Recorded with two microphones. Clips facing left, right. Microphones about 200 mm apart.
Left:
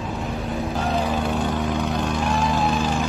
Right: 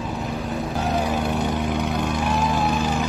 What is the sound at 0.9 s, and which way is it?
Vehicle, 10° right (ahead or behind).